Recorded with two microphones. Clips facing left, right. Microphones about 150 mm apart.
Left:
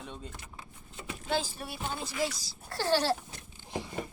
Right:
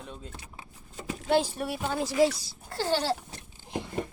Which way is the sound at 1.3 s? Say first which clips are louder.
Right 7 dB; 65° right (ahead or behind).